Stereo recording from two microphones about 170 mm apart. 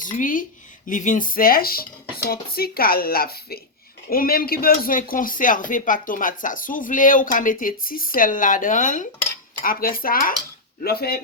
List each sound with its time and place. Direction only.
0.0 s speech: 50° left (ahead or behind)